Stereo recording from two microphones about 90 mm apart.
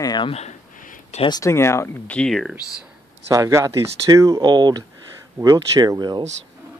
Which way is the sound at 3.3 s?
35° right (ahead or behind).